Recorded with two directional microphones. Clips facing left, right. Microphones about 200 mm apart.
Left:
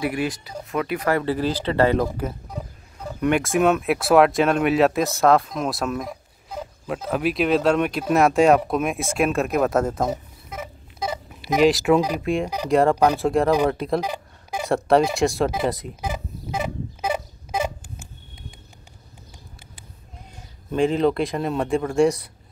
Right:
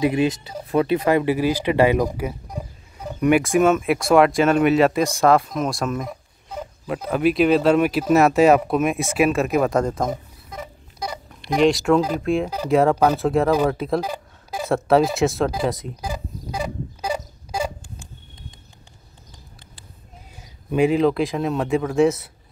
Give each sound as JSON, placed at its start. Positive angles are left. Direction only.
{"t": 0.0, "sound": "speech", "side_deg": -20}
{"t": 10.5, "sound": "a sound", "side_deg": 25}
{"t": 11.2, "sound": "speech", "side_deg": 5}
{"t": 12.9, "sound": "speech", "side_deg": 15}
{"t": 13.2, "sound": "speech", "side_deg": 0}
{"t": 14.0, "sound": "a sound", "side_deg": 15}
{"t": 14.7, "sound": "speech", "side_deg": 0}
{"t": 16.0, "sound": "a sound", "side_deg": 20}
{"t": 20.7, "sound": "speech", "side_deg": -5}